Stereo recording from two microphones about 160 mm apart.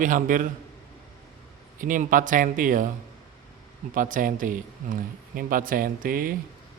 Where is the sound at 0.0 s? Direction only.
55° right (ahead or behind).